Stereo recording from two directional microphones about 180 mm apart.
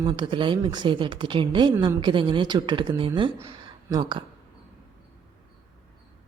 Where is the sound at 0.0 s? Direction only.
25° right (ahead or behind).